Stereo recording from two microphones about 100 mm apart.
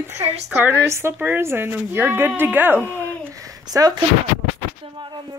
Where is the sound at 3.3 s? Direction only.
35° right (ahead or behind).